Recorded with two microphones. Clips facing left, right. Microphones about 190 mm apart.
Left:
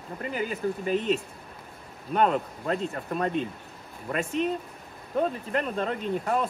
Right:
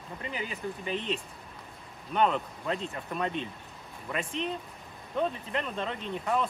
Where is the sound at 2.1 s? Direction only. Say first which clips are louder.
Left 3 dB; 40° left (ahead or behind).